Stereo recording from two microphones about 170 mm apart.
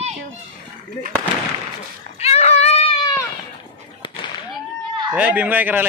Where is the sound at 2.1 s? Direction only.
40° left (ahead or behind).